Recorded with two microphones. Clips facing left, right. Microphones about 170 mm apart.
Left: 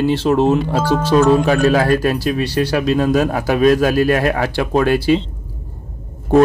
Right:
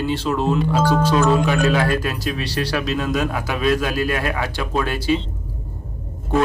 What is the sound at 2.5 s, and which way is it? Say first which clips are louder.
Speech: left 4 dB; 25° left (ahead or behind).